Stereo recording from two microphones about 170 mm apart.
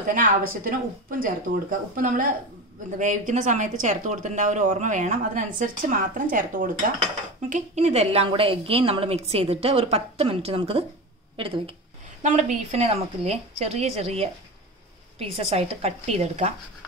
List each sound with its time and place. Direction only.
0.1 s speech: 55° right (ahead or behind)
6.3 s dishes: 50° right (ahead or behind); by 11.7 s 35° right (ahead or behind)
12.2 s dishes: 45° right (ahead or behind)